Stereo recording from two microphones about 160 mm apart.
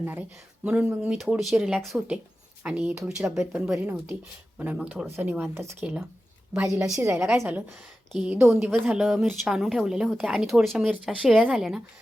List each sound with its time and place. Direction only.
0.0 s speech: 10° right (ahead or behind)